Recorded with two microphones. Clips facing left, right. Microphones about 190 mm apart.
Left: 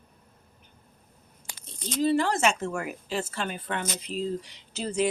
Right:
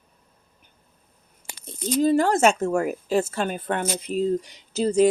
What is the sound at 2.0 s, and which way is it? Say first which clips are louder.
A woman's voice: right 5 dB; 45° right (ahead or behind).